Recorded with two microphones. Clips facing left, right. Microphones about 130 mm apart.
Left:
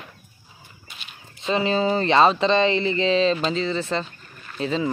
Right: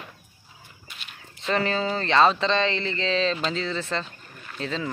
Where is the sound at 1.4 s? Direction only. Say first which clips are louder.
Left 3 dB; 20° left (ahead or behind).